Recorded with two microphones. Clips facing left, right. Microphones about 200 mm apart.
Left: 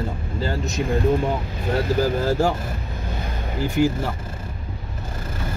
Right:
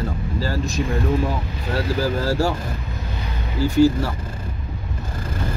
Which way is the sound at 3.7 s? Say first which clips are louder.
Right 5 dB; 20° left (ahead or behind).